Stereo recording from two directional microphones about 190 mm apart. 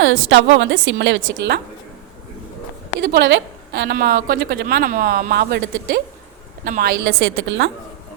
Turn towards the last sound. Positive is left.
turn(degrees=-75)  # may be behind; listen again after turning